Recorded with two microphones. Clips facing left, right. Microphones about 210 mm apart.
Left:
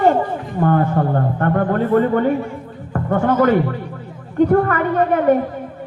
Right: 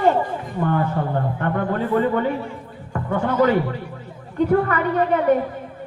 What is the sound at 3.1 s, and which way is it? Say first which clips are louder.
Speech: left 3 dB; 50° left (ahead or behind).